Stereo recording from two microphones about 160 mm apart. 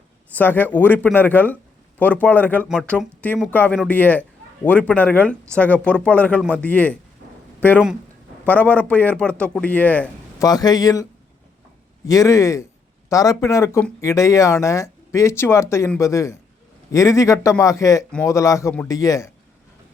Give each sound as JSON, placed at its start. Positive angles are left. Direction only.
{"t": 0.3, "sound": "speech", "side_deg": 10}
{"t": 8.4, "sound": "speech", "side_deg": 10}
{"t": 10.4, "sound": "speech", "side_deg": 25}
{"t": 12.0, "sound": "speech", "side_deg": 20}